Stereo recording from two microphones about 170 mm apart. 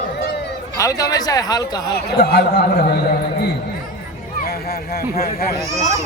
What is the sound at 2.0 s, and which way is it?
Speech, 70° left (ahead or behind).